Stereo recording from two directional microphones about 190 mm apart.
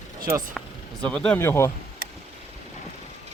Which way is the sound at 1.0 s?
5° left (ahead or behind).